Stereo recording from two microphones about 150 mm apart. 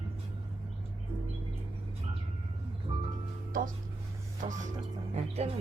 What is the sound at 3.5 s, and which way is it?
Music, 65° right (ahead or behind).